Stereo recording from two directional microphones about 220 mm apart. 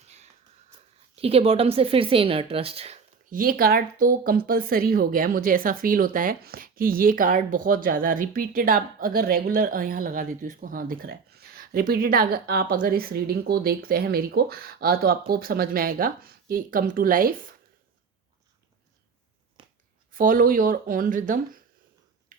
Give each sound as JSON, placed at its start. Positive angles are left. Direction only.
{"t": 1.1, "sound": "speech", "side_deg": -25}
{"t": 20.1, "sound": "speech", "side_deg": -40}
{"t": 22.3, "sound": "finger snapping", "side_deg": -35}